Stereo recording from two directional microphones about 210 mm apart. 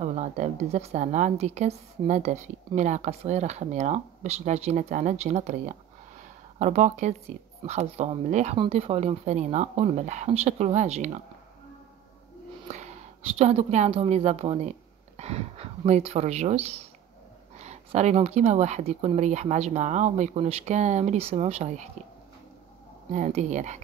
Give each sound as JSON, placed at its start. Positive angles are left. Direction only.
{"t": 0.0, "sound": "a woman's voice", "side_deg": -35}
{"t": 12.6, "sound": "a woman's voice", "side_deg": -35}
{"t": 23.1, "sound": "a woman's voice", "side_deg": -35}